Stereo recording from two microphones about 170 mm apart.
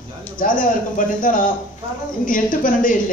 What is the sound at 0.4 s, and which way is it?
A man's voice, 50° left (ahead or behind).